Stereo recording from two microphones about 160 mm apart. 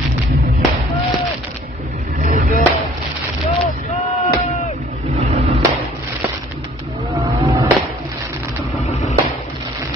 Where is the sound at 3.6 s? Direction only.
40° left (ahead or behind).